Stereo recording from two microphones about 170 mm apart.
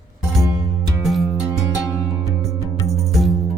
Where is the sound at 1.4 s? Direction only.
20° left (ahead or behind).